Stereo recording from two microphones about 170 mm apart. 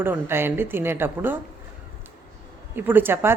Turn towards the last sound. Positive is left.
turn(degrees=-15)  # may be behind; listen again after turning